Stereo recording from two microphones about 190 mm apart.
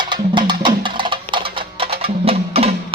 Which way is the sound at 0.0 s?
25° right (ahead or behind).